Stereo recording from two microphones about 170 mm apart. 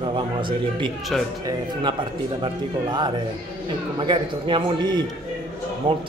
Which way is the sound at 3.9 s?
30° right (ahead or behind).